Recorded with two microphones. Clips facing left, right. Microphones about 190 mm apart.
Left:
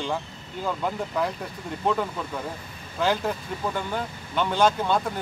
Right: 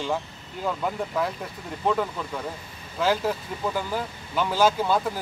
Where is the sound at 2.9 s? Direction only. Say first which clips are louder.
Right 1 dB; centre (ahead or behind).